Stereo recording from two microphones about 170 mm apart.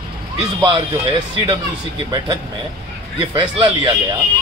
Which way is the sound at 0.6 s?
25° right (ahead or behind).